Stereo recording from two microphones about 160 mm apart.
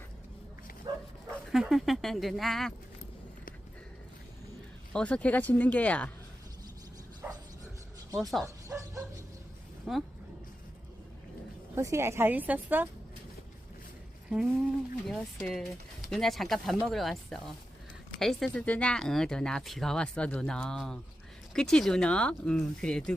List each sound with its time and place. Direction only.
0.9 s bow-wow: 25° right (ahead or behind)
1.5 s speech: 5° right (ahead or behind)
4.9 s speech: 5° left (ahead or behind)
7.2 s bow-wow: 10° right (ahead or behind)
8.1 s speech: centre (ahead or behind)
8.4 s bow-wow: 20° right (ahead or behind)
9.9 s speech: centre (ahead or behind)
11.7 s a woman's voice: 15° right (ahead or behind)
14.3 s speech: centre (ahead or behind)